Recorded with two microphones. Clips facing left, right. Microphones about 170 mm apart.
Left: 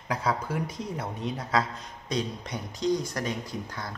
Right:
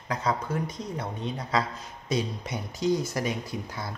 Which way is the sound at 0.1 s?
5° left (ahead or behind).